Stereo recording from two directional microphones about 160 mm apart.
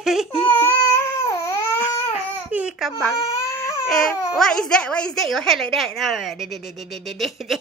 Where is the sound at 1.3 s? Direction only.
20° left (ahead or behind).